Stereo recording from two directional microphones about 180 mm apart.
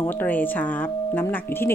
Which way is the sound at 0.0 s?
10° left (ahead or behind).